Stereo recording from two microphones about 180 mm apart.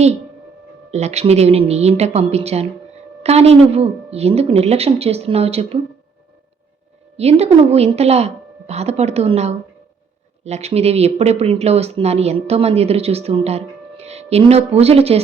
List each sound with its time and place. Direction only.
0.9 s speech: 35° right (ahead or behind)
7.2 s speech: 35° right (ahead or behind)